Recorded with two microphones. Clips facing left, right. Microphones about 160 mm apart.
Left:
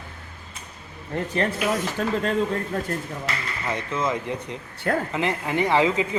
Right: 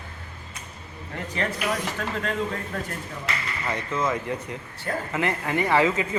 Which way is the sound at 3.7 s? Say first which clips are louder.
Left 1 dB; 20° left (ahead or behind).